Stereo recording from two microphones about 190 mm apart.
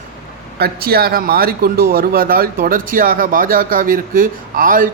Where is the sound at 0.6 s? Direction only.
55° right (ahead or behind).